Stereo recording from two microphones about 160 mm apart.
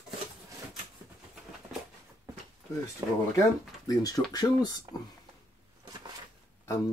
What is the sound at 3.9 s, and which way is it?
Speech, 20° left (ahead or behind).